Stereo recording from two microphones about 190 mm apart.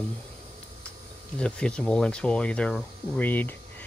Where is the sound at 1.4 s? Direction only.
5° left (ahead or behind).